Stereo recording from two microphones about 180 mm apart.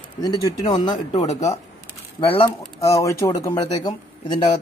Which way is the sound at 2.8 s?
15° left (ahead or behind).